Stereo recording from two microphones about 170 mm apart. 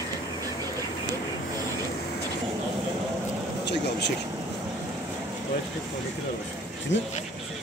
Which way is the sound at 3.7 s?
85° left.